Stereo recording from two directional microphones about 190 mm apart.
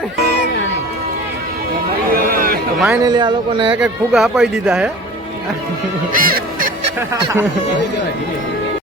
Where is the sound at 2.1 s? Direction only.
50° right (ahead or behind).